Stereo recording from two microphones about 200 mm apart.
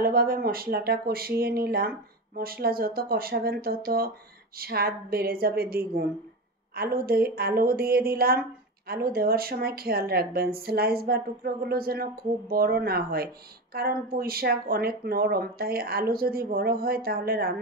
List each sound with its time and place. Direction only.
0.0 s speech: 50° right (ahead or behind)